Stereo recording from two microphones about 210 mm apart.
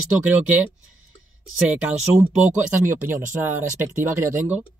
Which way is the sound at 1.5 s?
5° right (ahead or behind).